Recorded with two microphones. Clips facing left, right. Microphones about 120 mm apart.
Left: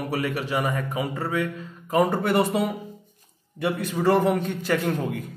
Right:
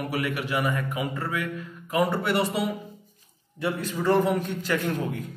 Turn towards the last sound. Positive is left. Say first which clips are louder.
# left 2 dB
turn(degrees=55)  # may be behind; listen again after turning